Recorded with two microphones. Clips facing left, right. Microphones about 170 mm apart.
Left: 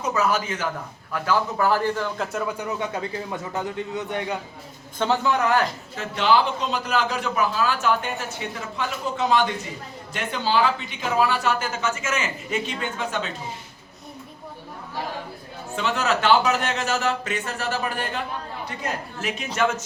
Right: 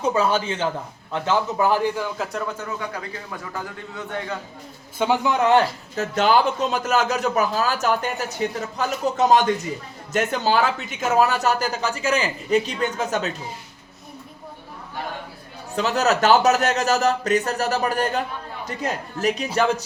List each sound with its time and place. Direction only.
0.0 s a man's voice: 30° right (ahead or behind)
2.1 s a man's voice: centre (ahead or behind); by 4.4 s 20° left (ahead or behind)
4.9 s a man's voice: 15° right (ahead or behind)
6.0 s a man's voice: 45° right (ahead or behind)
15.7 s a man's voice: 40° right (ahead or behind)